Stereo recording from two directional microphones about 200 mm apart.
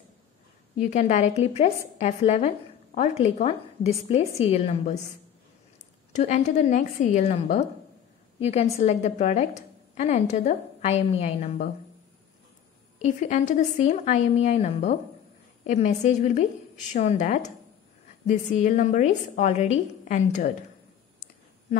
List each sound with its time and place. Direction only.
0.8 s a woman's voice: 35° left (ahead or behind)
6.1 s a woman's voice: 35° left (ahead or behind)
8.7 s a woman's voice: 35° left (ahead or behind)
13.0 s a woman's voice: 35° left (ahead or behind)